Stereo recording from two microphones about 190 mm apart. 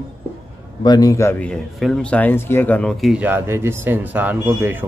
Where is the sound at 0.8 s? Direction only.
20° left (ahead or behind).